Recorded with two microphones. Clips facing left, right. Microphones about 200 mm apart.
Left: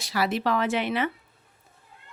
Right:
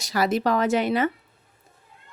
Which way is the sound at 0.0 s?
45° right (ahead or behind).